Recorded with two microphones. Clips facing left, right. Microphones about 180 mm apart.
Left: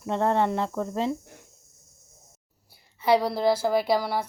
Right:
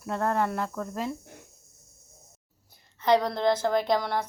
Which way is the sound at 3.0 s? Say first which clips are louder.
Left 1 dB; 5° left (ahead or behind).